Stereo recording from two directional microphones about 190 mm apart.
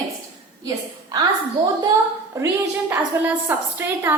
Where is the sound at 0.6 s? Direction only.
20° right (ahead or behind).